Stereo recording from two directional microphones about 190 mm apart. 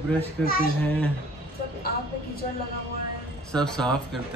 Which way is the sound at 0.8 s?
10° left (ahead or behind).